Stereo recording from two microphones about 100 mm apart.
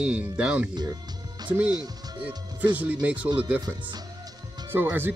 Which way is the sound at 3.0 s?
15° right (ahead or behind).